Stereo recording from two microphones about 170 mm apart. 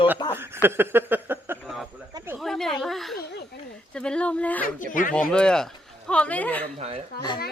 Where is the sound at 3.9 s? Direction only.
5° left (ahead or behind).